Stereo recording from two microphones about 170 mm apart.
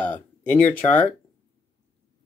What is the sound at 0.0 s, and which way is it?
Speech, 10° left (ahead or behind).